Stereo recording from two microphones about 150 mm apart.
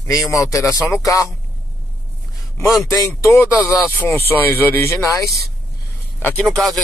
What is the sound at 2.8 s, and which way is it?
Speech, 15° left (ahead or behind).